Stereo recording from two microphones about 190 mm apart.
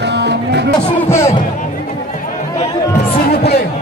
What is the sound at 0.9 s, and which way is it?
Music, 15° left (ahead or behind).